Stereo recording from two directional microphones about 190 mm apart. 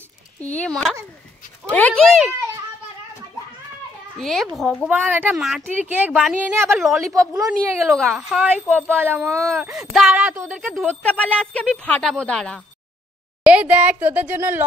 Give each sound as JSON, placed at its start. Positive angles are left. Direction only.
{"t": 0.4, "sound": "speech", "side_deg": 5}
{"t": 4.2, "sound": "speech", "side_deg": 0}
{"t": 9.7, "sound": "speech", "side_deg": 0}
{"t": 10.6, "sound": "speech", "side_deg": 0}
{"t": 13.5, "sound": "speech", "side_deg": -10}